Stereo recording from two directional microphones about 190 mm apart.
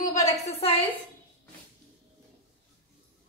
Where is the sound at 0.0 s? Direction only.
35° left (ahead or behind).